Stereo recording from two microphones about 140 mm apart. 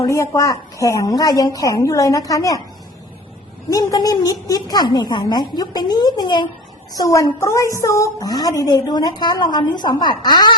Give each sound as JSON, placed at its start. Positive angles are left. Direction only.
{"t": 0.0, "sound": "a woman's voice", "side_deg": 20}
{"t": 3.7, "sound": "a woman's voice", "side_deg": 25}